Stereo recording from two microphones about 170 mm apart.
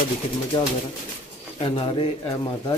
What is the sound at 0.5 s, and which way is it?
Speech, 30° left (ahead or behind).